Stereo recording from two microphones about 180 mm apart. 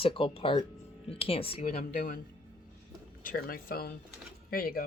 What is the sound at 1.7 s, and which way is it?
Speech, 55° left (ahead or behind).